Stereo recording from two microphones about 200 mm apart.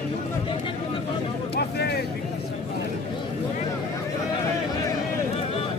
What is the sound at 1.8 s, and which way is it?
Vehicle, 55° left (ahead or behind).